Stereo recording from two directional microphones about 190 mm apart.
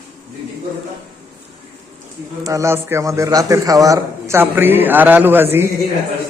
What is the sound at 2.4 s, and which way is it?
A man's voice, 15° right (ahead or behind).